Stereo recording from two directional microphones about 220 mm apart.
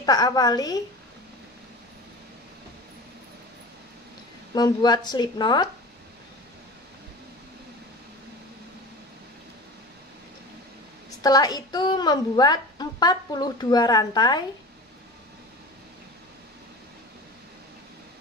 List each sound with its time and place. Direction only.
0.0 s a woman's voice: 15° left (ahead or behind)
4.6 s a woman's voice: 20° left (ahead or behind)
11.2 s a woman's voice: 15° left (ahead or behind)